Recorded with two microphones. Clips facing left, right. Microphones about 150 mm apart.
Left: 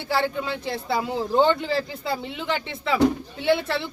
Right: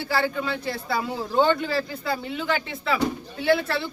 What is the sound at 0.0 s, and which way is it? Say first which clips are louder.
A man's voice: even; 20° left (ahead or behind).